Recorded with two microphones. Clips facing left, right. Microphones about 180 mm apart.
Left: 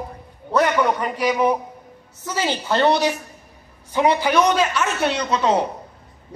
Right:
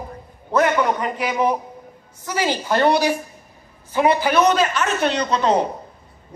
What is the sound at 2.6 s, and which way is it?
Speech, 10° right (ahead or behind).